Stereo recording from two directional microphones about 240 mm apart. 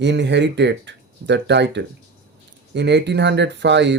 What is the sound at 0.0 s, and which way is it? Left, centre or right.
Speech, right.